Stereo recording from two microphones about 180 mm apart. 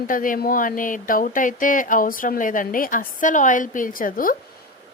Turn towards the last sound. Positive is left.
turn(degrees=50)  # may be behind; listen again after turning